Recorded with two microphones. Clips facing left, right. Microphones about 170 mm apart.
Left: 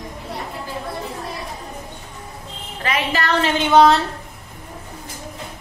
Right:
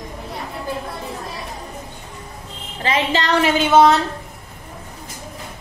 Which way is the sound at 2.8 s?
25° right (ahead or behind).